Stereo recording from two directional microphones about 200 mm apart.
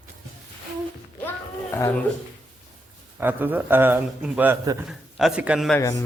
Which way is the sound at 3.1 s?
10° right (ahead or behind).